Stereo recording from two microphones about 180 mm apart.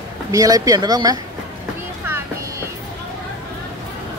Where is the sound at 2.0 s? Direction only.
15° right (ahead or behind).